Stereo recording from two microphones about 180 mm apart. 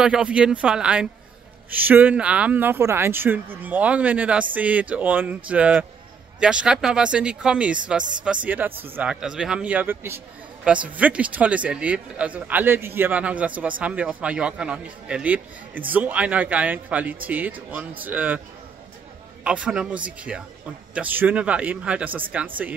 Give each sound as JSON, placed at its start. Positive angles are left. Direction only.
{"t": 0.0, "sound": "speech", "side_deg": -5}
{"t": 19.4, "sound": "speech", "side_deg": -5}